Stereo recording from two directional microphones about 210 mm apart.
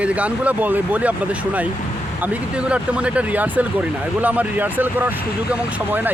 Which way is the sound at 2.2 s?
5° right (ahead or behind).